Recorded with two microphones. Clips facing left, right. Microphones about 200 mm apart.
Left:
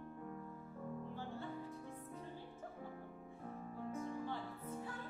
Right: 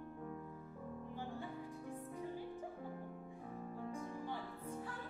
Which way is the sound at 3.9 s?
10° right (ahead or behind).